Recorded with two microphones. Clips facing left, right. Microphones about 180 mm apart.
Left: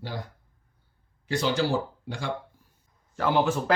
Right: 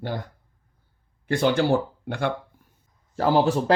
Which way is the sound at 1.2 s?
55° right (ahead or behind).